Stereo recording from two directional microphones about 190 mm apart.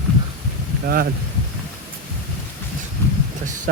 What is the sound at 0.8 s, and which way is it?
Speech, 50° right (ahead or behind).